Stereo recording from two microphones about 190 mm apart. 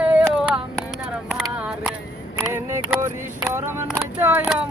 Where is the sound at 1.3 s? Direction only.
Centre (ahead or behind).